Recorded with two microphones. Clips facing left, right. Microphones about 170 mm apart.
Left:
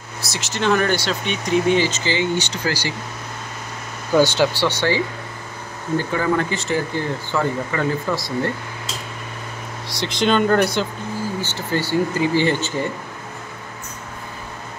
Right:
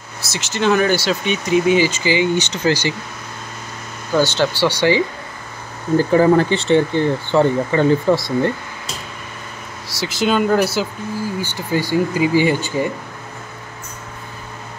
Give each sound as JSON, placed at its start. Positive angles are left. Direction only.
{"t": 0.2, "sound": "speech", "side_deg": 0}
{"t": 4.1, "sound": "speech", "side_deg": 10}
{"t": 4.6, "sound": "speech", "side_deg": -15}
{"t": 5.9, "sound": "speech", "side_deg": -35}
{"t": 9.8, "sound": "speech", "side_deg": -5}